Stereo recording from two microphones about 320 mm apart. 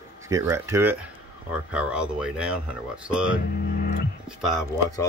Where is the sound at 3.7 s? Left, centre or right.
Left.